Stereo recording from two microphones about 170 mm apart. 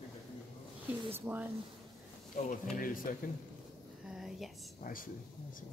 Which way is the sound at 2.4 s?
50° left (ahead or behind).